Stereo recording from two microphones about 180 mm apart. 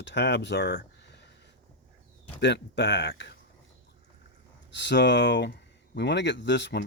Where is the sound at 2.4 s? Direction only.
75° left (ahead or behind).